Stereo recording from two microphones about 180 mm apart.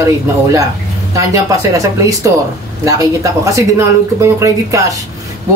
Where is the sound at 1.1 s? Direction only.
20° right (ahead or behind).